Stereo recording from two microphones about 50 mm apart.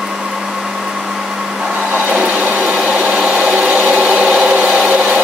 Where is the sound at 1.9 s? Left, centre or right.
Right.